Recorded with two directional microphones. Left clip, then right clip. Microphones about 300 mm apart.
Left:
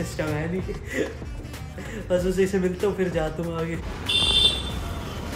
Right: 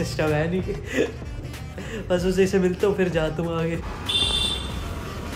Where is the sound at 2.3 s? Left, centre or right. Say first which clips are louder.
Right 3 dB; centre.